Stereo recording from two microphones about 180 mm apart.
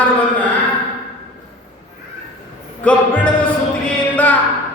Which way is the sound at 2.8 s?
10° left (ahead or behind).